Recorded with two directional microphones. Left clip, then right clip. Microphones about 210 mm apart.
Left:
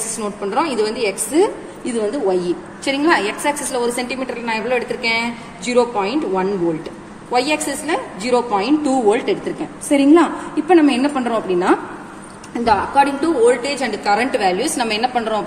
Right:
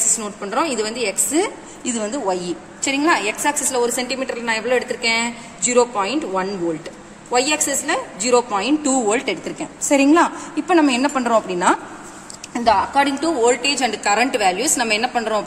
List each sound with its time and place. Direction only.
0.1 s a woman's voice: 30° right (ahead or behind)